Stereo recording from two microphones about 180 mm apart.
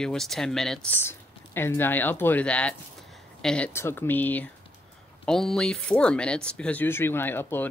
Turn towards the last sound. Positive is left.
turn(degrees=10)  # may be behind; listen again after turning